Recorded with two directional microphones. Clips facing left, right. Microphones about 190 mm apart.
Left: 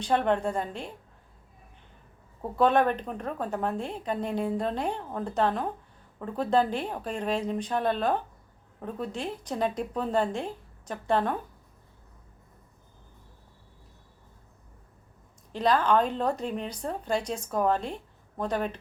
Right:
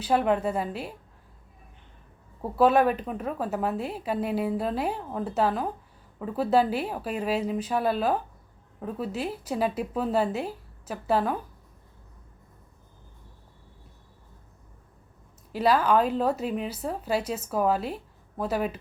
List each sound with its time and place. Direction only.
0.0 s a woman's voice: 5° right (ahead or behind)
2.4 s a woman's voice: 5° right (ahead or behind)
15.5 s speech: 10° right (ahead or behind)